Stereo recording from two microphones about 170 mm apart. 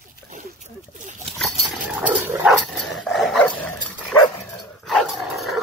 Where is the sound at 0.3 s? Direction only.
45° right (ahead or behind).